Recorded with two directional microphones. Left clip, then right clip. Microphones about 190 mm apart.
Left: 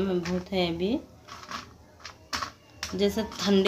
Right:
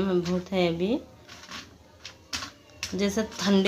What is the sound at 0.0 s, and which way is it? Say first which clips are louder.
Speech: right 2 dB; 20° right (ahead or behind).